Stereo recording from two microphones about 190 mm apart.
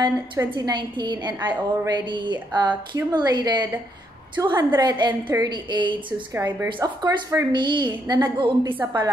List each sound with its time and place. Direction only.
0.0 s a woman's voice: 20° right (ahead or behind)